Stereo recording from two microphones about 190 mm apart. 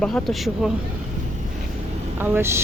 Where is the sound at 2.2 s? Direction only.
10° right (ahead or behind).